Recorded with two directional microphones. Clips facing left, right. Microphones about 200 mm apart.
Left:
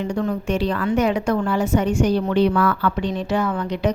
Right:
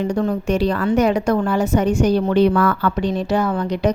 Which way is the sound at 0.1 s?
40° right (ahead or behind).